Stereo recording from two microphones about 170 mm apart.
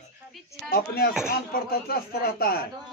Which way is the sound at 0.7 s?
60° left (ahead or behind).